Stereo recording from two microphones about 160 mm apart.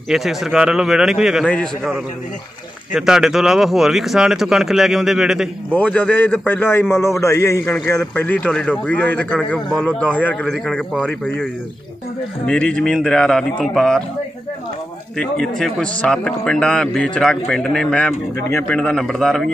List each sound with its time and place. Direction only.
0.1 s a man's voice: centre (ahead or behind)
5.7 s a man's voice: 10° left (ahead or behind)
12.4 s a man's voice: 10° left (ahead or behind)
15.1 s a man's voice: 5° left (ahead or behind)